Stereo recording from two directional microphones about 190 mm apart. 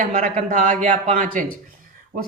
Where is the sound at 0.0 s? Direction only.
45° right (ahead or behind).